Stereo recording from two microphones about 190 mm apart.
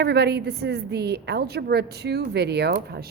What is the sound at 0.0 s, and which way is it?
A woman's voice, 60° right (ahead or behind).